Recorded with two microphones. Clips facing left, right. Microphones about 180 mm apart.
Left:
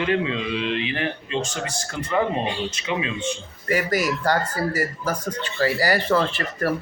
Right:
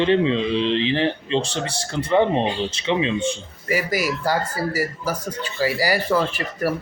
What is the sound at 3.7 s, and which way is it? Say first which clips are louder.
A man's voice: even; 10° right (ahead or behind).